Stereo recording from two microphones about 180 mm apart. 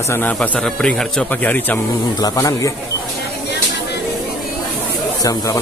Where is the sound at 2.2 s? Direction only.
20° left (ahead or behind).